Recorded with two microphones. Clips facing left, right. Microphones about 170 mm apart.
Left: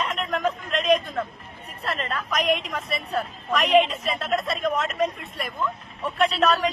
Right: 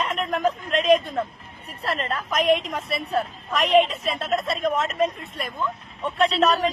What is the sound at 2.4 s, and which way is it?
Speech, centre (ahead or behind).